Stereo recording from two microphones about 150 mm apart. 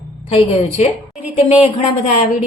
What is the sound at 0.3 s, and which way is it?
Speech, 40° left (ahead or behind).